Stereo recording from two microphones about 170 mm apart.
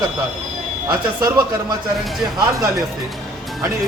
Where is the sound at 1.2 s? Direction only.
25° right (ahead or behind).